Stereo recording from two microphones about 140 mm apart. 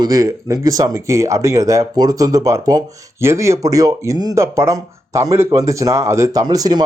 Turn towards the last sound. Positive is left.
turn(degrees=-30)  # may be behind; listen again after turning